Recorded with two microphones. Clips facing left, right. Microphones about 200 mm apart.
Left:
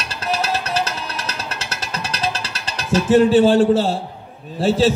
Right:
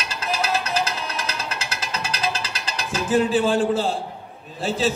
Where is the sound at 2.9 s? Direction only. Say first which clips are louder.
Left 7 dB; 35° left (ahead or behind).